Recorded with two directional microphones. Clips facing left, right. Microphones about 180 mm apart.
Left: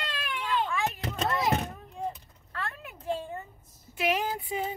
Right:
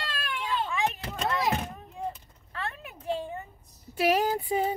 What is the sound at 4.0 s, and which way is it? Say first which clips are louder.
Speech: right 4 dB; 40° right (ahead or behind).